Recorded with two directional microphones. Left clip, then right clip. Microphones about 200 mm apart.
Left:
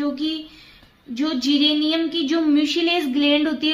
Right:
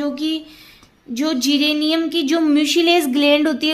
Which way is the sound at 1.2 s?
40° right (ahead or behind).